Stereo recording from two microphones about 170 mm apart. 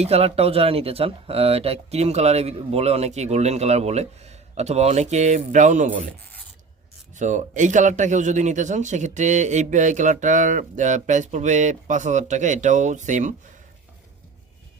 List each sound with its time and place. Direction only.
0.0 s speech: 35° right (ahead or behind)
7.2 s a man's voice: 45° right (ahead or behind)